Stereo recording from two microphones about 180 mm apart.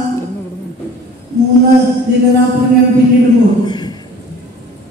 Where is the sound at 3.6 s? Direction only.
25° left (ahead or behind).